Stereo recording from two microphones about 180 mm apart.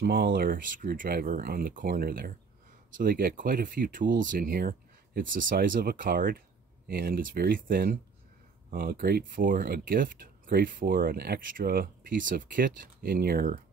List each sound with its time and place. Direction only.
0.0 s speech: 60° right (ahead or behind)